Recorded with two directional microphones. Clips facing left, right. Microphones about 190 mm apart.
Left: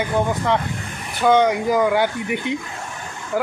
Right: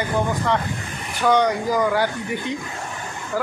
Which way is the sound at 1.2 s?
5° left (ahead or behind).